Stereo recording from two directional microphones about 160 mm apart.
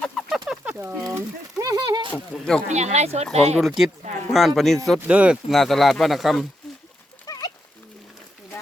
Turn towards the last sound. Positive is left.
turn(degrees=25)  # may be behind; listen again after turning